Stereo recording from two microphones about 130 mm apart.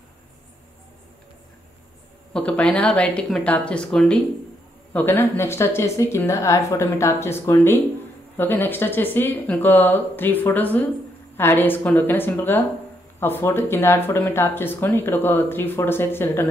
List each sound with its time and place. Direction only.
2.3 s speech: 10° left (ahead or behind)
4.9 s speech: 15° left (ahead or behind)